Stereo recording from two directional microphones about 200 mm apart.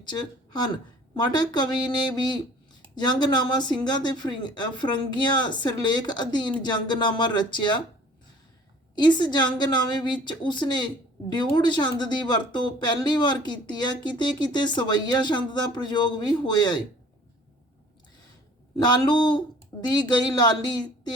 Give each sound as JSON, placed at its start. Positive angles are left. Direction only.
{"t": 0.0, "sound": "speech", "side_deg": 20}
{"t": 9.0, "sound": "speech", "side_deg": 20}
{"t": 18.8, "sound": "speech", "side_deg": 20}